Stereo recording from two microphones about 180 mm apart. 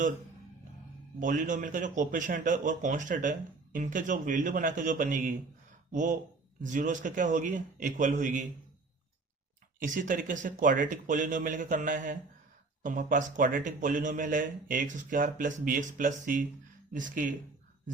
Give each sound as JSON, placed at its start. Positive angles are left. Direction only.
{"t": 1.2, "sound": "a man's voice", "side_deg": -45}
{"t": 9.8, "sound": "a man's voice", "side_deg": -45}